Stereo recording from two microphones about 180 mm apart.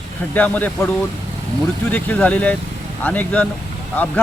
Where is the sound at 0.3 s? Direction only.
10° left (ahead or behind).